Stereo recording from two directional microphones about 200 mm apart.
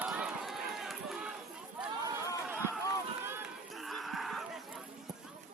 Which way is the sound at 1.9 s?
15° right (ahead or behind).